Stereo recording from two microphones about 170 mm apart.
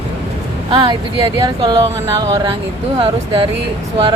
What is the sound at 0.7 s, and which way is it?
Speech, 25° right (ahead or behind).